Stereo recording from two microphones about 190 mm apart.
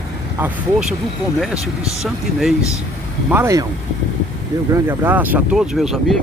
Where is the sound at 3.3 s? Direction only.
15° right (ahead or behind).